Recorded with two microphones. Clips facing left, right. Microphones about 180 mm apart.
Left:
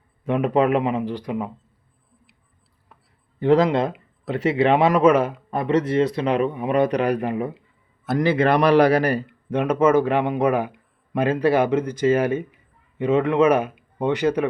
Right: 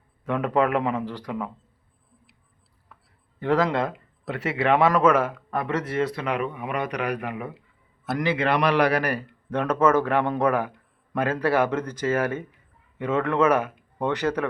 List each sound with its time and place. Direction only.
0.3 s a man's voice: 20° left (ahead or behind)
3.4 s a man's voice: 20° left (ahead or behind)